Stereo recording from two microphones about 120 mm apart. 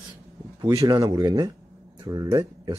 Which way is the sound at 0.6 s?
30° right (ahead or behind).